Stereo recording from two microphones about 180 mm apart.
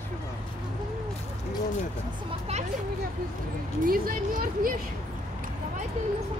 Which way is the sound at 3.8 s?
50° right (ahead or behind).